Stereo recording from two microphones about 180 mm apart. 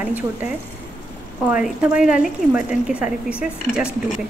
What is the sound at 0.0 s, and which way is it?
A woman's voice, 10° right (ahead or behind).